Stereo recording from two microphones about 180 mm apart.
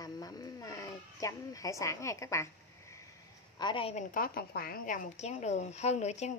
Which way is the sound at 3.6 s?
25° left (ahead or behind).